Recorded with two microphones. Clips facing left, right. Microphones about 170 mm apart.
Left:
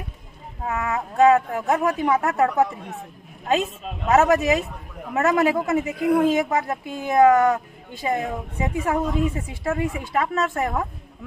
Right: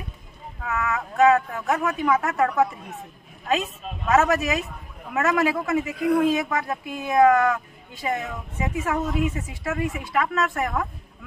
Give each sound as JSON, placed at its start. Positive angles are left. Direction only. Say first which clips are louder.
{"t": 0.6, "sound": "speech", "louder": "left 1 dB", "side_deg": 30}
{"t": 4.1, "sound": "speech", "louder": "left 3 dB", "side_deg": 30}